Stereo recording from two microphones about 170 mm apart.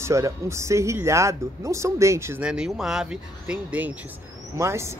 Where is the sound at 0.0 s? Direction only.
15° right (ahead or behind).